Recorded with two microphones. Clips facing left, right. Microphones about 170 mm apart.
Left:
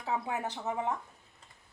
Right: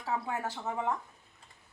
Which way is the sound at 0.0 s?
20° left (ahead or behind).